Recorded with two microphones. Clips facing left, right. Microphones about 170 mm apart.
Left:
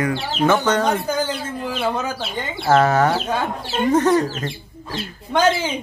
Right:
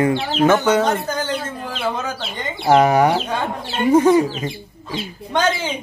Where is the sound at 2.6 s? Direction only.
15° right (ahead or behind).